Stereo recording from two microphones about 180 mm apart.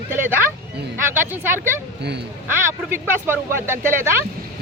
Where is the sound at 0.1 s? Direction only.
10° right (ahead or behind).